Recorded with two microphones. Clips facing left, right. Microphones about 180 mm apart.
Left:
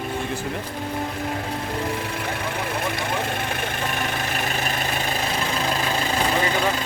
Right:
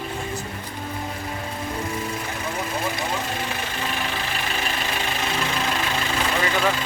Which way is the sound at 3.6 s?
55° left (ahead or behind).